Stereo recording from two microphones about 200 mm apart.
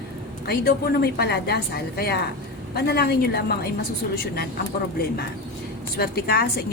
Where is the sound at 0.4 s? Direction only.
50° left (ahead or behind).